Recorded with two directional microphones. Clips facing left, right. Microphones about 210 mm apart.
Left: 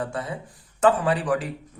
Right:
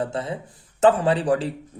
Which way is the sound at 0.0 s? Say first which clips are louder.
Right 3 dB; 25° right (ahead or behind).